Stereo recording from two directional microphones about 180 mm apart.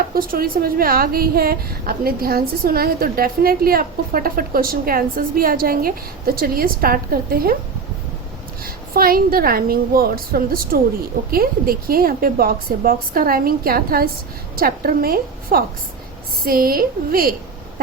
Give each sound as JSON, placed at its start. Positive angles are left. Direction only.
{"t": 0.2, "sound": "a woman's voice", "side_deg": -55}
{"t": 8.6, "sound": "a woman's voice", "side_deg": -55}